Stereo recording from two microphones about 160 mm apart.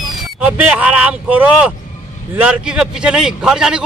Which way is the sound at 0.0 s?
5° right (ahead or behind).